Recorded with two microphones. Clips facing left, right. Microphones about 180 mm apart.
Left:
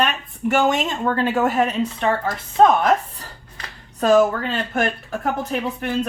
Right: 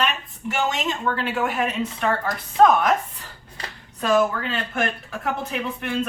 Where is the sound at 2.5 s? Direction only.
25° left (ahead or behind).